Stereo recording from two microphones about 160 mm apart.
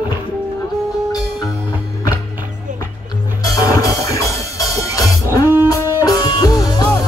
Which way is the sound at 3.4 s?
20° left (ahead or behind).